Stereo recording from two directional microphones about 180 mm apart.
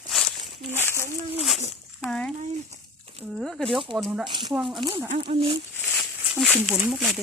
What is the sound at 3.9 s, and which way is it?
Speech, 25° right (ahead or behind).